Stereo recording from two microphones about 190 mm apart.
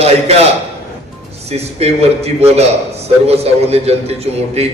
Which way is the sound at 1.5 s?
35° right (ahead or behind).